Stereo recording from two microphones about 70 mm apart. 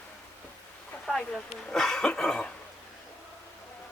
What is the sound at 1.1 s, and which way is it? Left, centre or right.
Speech, centre.